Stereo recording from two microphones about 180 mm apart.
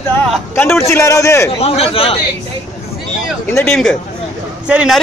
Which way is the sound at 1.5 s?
35° left (ahead or behind).